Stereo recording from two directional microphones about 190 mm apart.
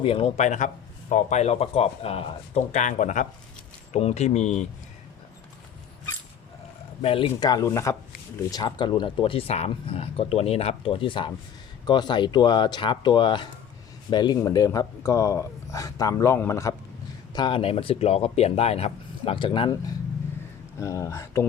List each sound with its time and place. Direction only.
0.0 s speech: 30° left (ahead or behind)
7.0 s speech: 30° left (ahead or behind)
20.7 s speech: 15° left (ahead or behind)